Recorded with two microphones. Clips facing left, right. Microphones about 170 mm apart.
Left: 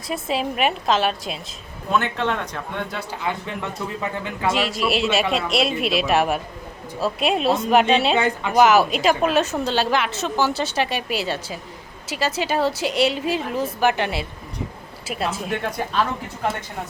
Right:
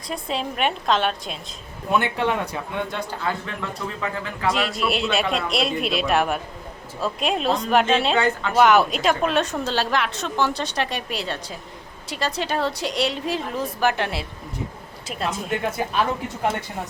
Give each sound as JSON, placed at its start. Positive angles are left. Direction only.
{"t": 0.1, "sound": "a woman's voice", "side_deg": 5}
{"t": 1.9, "sound": "speech", "side_deg": -15}
{"t": 2.9, "sound": "speech", "side_deg": 5}
{"t": 3.2, "sound": "speech", "side_deg": 20}
{"t": 4.5, "sound": "a woman's voice", "side_deg": 0}